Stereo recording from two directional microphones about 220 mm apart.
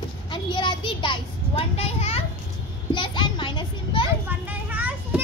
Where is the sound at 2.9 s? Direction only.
20° left (ahead or behind).